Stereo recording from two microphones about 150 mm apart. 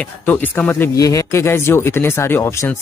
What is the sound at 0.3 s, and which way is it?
Speech, 10° left (ahead or behind).